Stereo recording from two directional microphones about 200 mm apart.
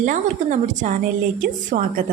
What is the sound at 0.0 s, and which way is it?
A woman's voice, 40° right (ahead or behind).